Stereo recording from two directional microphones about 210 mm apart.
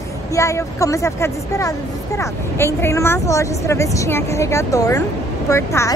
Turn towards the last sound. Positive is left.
turn(degrees=15)  # may be behind; listen again after turning